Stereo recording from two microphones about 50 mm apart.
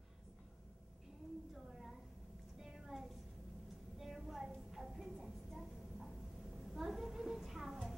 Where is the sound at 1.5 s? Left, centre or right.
Centre.